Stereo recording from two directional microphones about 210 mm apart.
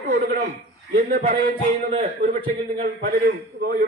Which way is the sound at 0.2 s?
45° right (ahead or behind).